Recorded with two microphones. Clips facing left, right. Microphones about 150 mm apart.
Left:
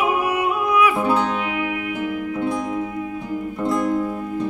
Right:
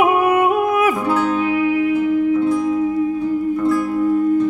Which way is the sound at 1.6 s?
30° right (ahead or behind).